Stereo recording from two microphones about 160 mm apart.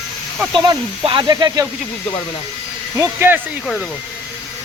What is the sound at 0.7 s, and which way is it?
Speech, 30° right (ahead or behind).